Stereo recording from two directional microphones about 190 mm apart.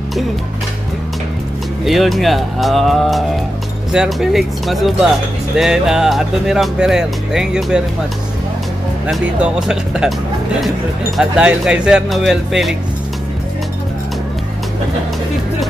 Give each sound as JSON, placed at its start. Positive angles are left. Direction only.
{"t": 1.9, "sound": "speech", "side_deg": 0}
{"t": 9.0, "sound": "speech", "side_deg": -5}
{"t": 11.1, "sound": "speech", "side_deg": -5}